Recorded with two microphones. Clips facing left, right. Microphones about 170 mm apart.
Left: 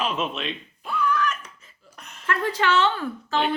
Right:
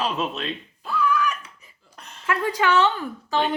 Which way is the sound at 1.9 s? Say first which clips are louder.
Right 1 dB; 30° right (ahead or behind).